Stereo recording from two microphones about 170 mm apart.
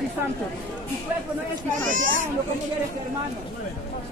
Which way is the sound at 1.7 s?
50° right (ahead or behind).